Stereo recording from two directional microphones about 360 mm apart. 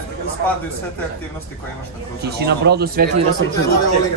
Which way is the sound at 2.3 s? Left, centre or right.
Right.